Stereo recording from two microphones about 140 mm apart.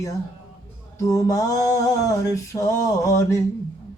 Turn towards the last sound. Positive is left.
turn(degrees=20)  # may be behind; listen again after turning